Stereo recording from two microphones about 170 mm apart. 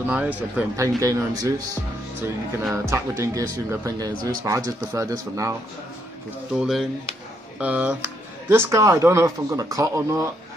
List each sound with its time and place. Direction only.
0.0 s speech: 10° right (ahead or behind)
2.7 s speech: 15° right (ahead or behind)
6.6 s speech: centre (ahead or behind); by 10.2 s 20° right (ahead or behind)